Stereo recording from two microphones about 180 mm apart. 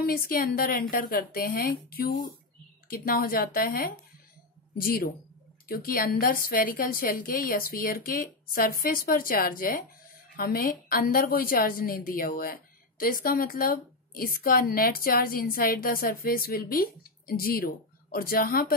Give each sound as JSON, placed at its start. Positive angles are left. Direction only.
{"t": 0.0, "sound": "a woman's voice", "side_deg": 55}